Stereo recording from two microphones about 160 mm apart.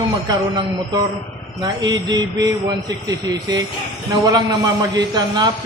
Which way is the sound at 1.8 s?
25° right (ahead or behind).